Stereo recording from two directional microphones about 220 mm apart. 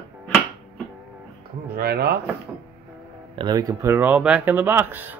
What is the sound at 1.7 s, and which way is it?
Speech, 45° right (ahead or behind).